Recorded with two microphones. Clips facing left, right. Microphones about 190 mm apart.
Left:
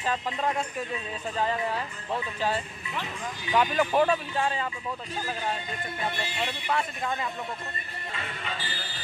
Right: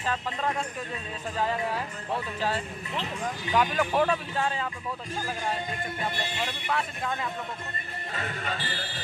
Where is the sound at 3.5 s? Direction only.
5° left (ahead or behind).